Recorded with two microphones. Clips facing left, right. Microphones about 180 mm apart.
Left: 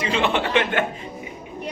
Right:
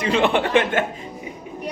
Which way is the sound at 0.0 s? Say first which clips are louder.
Right 3 dB; 55° right (ahead or behind).